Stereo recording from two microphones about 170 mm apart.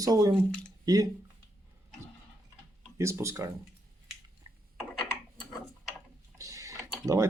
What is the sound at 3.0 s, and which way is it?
Speech, 15° right (ahead or behind).